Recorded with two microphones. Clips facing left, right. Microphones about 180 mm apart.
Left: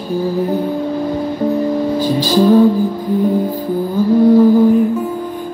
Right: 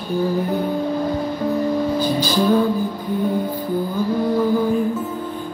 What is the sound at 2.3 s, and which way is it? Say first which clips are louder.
Music: left 8 dB; 35° left (ahead or behind).